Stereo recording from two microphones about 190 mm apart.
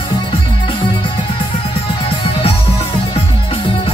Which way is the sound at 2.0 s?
30° left (ahead or behind).